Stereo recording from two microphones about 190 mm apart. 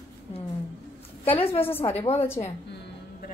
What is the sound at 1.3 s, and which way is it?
Speech, 30° left (ahead or behind).